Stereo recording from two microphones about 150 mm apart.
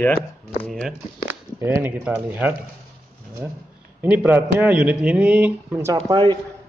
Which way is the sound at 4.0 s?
10° right (ahead or behind).